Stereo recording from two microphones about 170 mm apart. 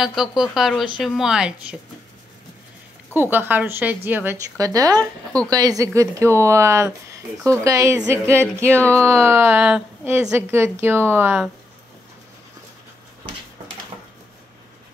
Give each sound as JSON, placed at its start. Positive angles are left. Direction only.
{"t": 0.0, "sound": "a woman's voice", "side_deg": 0}
{"t": 3.2, "sound": "a woman's voice", "side_deg": -10}
{"t": 8.7, "sound": "speech", "side_deg": 10}
{"t": 9.0, "sound": "a woman's voice", "side_deg": -15}